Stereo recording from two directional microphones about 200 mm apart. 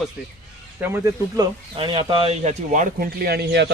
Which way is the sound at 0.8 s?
15° right (ahead or behind).